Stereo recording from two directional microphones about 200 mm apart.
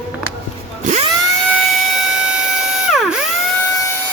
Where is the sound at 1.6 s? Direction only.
Centre (ahead or behind).